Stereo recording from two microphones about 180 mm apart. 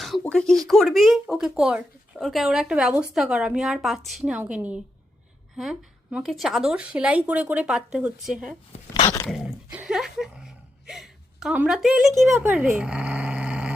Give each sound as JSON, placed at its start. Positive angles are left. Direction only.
{"t": 0.0, "sound": "speech", "side_deg": 0}
{"t": 9.7, "sound": "a sound", "side_deg": -5}
{"t": 12.2, "sound": "speech", "side_deg": -5}